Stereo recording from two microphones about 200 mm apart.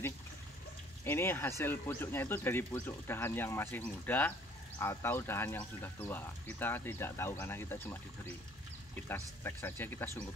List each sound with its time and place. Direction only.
1.0 s speech: 10° left (ahead or behind)